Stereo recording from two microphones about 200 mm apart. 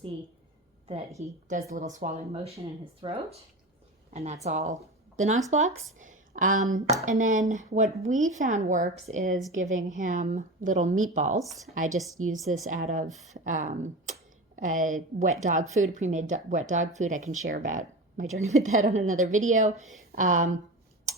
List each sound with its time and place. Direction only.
1.2 s speech: 45° right (ahead or behind)
19.8 s speech: centre (ahead or behind)
20.1 s speech: 40° right (ahead or behind)